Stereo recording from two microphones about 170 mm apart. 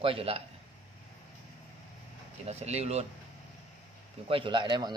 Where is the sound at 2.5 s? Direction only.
40° right (ahead or behind).